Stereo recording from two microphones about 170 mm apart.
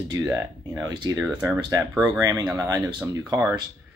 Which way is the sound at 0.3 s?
20° right (ahead or behind).